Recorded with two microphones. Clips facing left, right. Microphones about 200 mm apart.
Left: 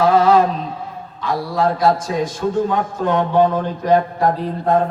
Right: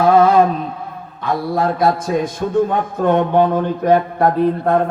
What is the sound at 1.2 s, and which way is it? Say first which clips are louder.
A man's voice: right 1 dB; 55° right (ahead or behind).